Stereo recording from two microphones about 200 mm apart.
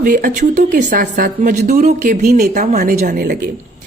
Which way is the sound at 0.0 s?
45° right (ahead or behind).